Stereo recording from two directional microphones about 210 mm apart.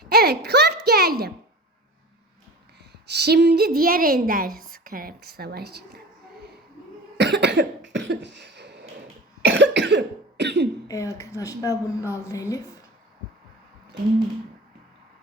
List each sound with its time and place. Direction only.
0.0 s a child's voice: 50° right (ahead or behind)
3.1 s a woman's voice: 50° right (ahead or behind)
7.2 s cough: 55° right (ahead or behind)
10.8 s a woman's voice: 15° left (ahead or behind)